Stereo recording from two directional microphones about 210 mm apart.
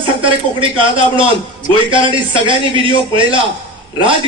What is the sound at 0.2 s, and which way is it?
A man's voice, 25° right (ahead or behind).